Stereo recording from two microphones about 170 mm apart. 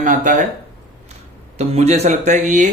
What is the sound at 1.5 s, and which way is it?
Speech, 40° right (ahead or behind).